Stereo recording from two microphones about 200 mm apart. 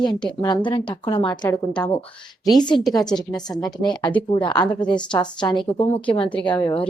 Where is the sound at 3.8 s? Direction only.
20° left (ahead or behind).